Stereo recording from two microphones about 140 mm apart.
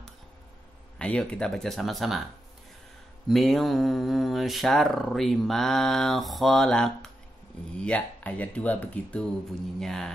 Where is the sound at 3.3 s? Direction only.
Centre (ahead or behind).